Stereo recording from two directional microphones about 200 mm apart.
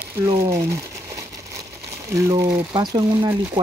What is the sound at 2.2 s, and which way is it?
Speech, 15° right (ahead or behind).